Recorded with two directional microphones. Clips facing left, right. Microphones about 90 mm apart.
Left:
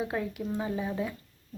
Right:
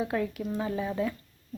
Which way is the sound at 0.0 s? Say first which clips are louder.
Right 2 dB; 20° left (ahead or behind).